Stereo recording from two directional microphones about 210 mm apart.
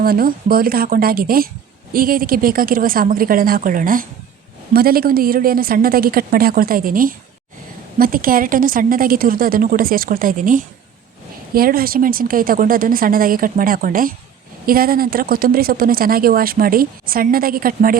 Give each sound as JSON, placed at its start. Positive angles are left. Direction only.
{"t": 0.0, "sound": "speech", "side_deg": -45}